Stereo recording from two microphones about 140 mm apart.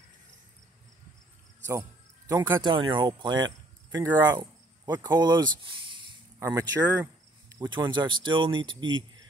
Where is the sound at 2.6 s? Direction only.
35° right (ahead or behind).